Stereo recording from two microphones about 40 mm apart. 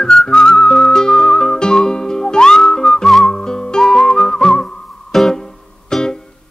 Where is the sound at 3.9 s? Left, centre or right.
Centre.